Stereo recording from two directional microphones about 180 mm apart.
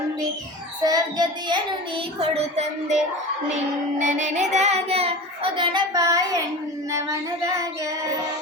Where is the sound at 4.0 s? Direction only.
45° right (ahead or behind); by 7.9 s 20° right (ahead or behind).